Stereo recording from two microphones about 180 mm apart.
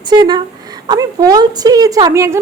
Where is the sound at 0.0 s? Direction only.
25° right (ahead or behind).